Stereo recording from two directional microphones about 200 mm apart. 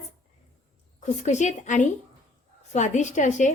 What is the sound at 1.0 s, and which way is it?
A woman's voice, 35° left (ahead or behind).